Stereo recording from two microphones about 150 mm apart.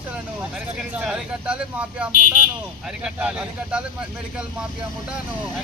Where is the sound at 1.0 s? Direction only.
10° right (ahead or behind).